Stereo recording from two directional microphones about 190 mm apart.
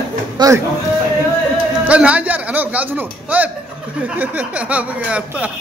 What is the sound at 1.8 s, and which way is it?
A man's voice, 5° right (ahead or behind).